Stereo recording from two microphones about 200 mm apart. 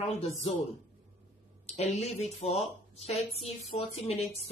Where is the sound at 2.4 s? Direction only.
30° left (ahead or behind).